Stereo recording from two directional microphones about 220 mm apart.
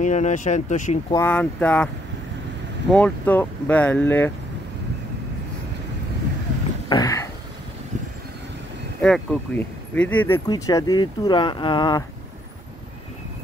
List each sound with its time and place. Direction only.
0.0 s speech: 35° left (ahead or behind)
1.1 s speech: 10° left (ahead or behind)
2.9 s speech: 5° left (ahead or behind)
6.9 s a sound: 15° left (ahead or behind)
9.0 s speech: 5° left (ahead or behind); by 12.0 s 20° left (ahead or behind)